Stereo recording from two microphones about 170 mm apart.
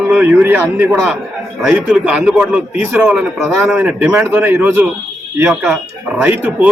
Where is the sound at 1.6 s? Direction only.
Centre (ahead or behind).